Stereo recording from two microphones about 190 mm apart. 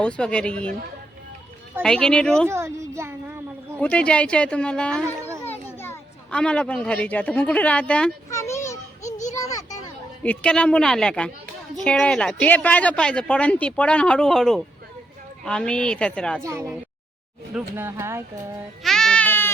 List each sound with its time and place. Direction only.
0.0 s speech: 5° left (ahead or behind)
1.8 s speech: 5° left (ahead or behind)
2.5 s a child's voice: 15° right (ahead or behind)
3.8 s a child's voice: 5° left (ahead or behind)
9.0 s a sound: 40° left (ahead or behind)
9.3 s children playing: 20° left (ahead or behind)
10.2 s speech: 5° left (ahead or behind)
16.4 s a child's voice: 15° right (ahead or behind)
18.8 s goat: centre (ahead or behind)